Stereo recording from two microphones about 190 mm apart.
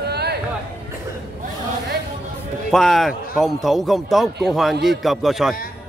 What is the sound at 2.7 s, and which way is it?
A man's voice, centre (ahead or behind).